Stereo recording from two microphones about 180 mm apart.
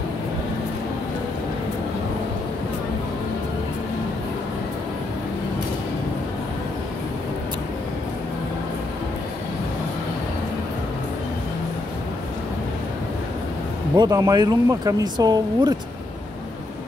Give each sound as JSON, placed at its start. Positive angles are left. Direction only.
{"t": 13.9, "sound": "speech", "side_deg": -20}